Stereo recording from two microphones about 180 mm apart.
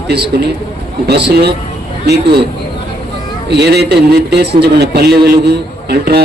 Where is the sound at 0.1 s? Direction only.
65° right (ahead or behind).